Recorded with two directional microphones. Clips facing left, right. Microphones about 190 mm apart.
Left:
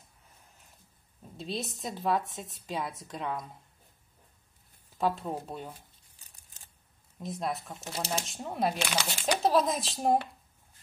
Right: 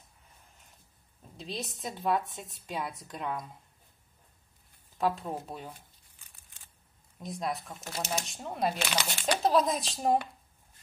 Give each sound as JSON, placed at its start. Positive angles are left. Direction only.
{"t": 1.3, "sound": "a woman's voice", "side_deg": 0}
{"t": 4.9, "sound": "a woman's voice", "side_deg": 0}
{"t": 6.1, "sound": "a sound", "side_deg": 40}
{"t": 7.2, "sound": "a woman's voice", "side_deg": 0}
{"t": 7.8, "sound": "speech", "side_deg": 30}
{"t": 8.3, "sound": "a woman's voice", "side_deg": 0}